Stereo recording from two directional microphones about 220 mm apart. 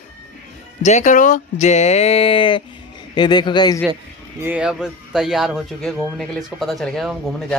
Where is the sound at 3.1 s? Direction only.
20° left (ahead or behind).